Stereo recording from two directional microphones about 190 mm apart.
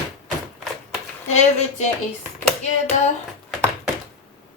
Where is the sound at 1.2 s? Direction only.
35° left (ahead or behind).